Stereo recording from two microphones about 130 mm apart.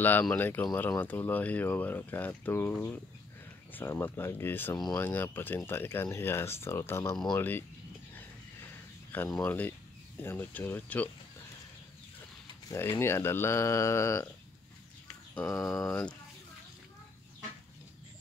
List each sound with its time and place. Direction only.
0.0 s speech: 15° left (ahead or behind)
8.1 s a sound: 15° left (ahead or behind)
9.4 s speech: 15° left (ahead or behind)
12.6 s speech: 20° left (ahead or behind)
15.4 s speech: 25° left (ahead or behind)
15.8 s speech: 5° left (ahead or behind)